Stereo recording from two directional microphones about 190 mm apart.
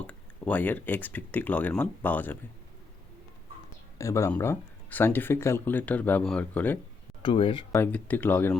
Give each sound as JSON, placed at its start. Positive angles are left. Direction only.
{"t": 0.1, "sound": "speech", "side_deg": 10}
{"t": 3.9, "sound": "speech", "side_deg": 15}
{"t": 7.2, "sound": "speech", "side_deg": 30}
{"t": 7.8, "sound": "speech", "side_deg": 10}